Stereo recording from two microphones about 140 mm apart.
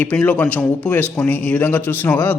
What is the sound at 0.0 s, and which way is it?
A man's voice, 10° left (ahead or behind).